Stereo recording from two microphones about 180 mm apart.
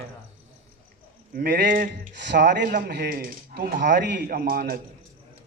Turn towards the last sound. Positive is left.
turn(degrees=-55)  # may be behind; listen again after turning